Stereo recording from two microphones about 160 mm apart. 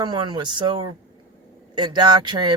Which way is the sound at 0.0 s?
25° right (ahead or behind).